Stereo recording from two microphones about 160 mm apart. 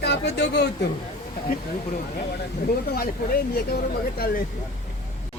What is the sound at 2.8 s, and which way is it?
Speech, 70° left (ahead or behind).